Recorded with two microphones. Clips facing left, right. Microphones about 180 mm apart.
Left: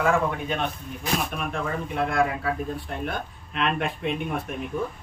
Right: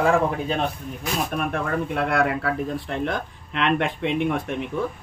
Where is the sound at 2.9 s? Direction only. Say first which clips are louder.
Right 4 dB; 90° right.